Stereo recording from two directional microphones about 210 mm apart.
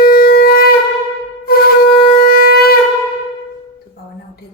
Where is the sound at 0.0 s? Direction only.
45° left (ahead or behind).